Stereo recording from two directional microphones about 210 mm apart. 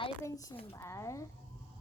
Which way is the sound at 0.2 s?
15° left (ahead or behind).